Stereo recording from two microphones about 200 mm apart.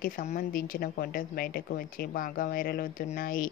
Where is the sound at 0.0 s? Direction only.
45° left (ahead or behind).